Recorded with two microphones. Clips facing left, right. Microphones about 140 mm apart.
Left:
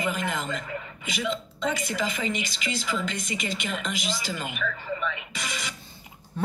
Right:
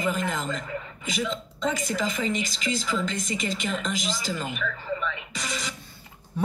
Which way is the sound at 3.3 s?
45° right (ahead or behind).